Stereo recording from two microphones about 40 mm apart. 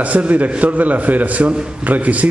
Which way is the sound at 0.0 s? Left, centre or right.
Right.